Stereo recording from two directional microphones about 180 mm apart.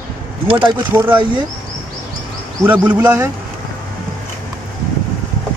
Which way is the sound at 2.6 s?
10° right (ahead or behind).